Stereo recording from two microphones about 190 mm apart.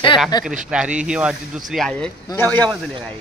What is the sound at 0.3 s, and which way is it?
Speech, 20° left (ahead or behind).